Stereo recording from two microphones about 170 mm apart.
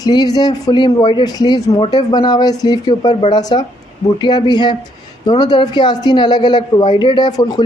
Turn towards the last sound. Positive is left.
turn(degrees=25)  # may be behind; listen again after turning